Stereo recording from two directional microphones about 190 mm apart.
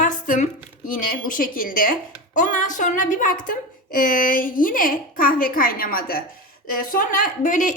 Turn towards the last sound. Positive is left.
turn(degrees=40)  # may be behind; listen again after turning